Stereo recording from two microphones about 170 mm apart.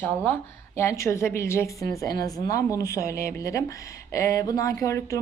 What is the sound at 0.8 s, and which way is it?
A woman's voice, 15° left (ahead or behind).